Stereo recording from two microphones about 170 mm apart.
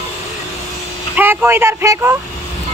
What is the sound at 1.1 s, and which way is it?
Speech, 10° right (ahead or behind).